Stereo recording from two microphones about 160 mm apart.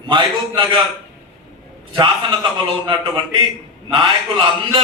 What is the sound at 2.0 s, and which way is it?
A man's voice, 30° right (ahead or behind).